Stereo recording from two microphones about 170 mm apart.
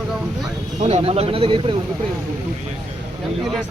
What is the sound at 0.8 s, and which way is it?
Speech, 40° right (ahead or behind).